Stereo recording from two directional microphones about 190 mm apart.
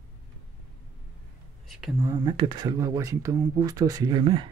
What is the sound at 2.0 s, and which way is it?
Speech, 20° right (ahead or behind).